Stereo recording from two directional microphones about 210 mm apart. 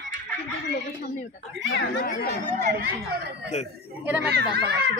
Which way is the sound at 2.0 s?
40° left (ahead or behind).